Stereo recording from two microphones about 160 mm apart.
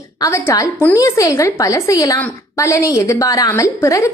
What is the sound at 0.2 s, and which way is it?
A woman's voice, 15° left (ahead or behind).